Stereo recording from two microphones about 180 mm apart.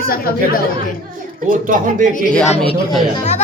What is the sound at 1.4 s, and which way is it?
Speech, 50° right (ahead or behind).